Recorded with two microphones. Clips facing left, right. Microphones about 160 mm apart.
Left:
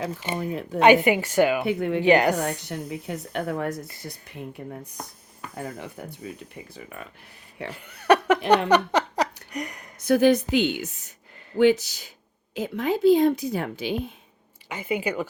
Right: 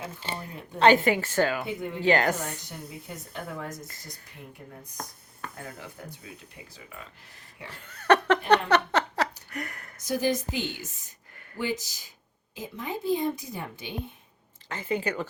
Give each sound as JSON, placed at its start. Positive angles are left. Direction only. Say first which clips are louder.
{"t": 0.2, "sound": "a woman's voice", "louder": "left 8 dB", "side_deg": 15}
{"t": 1.6, "sound": "a woman's voice", "louder": "left 9 dB", "side_deg": 70}
{"t": 2.0, "sound": "a woman's voice", "louder": "left 4 dB", "side_deg": 15}
{"t": 2.3, "sound": "a woman's voice", "louder": "left 8 dB", "side_deg": 70}
{"t": 7.7, "sound": "a woman's voice", "louder": "left 2 dB", "side_deg": 15}
{"t": 10.0, "sound": "a woman's voice", "louder": "left 9 dB", "side_deg": 65}
{"t": 12.5, "sound": "a woman's voice", "louder": "left 9 dB", "side_deg": 85}
{"t": 14.7, "sound": "a woman's voice", "louder": "left 2 dB", "side_deg": 15}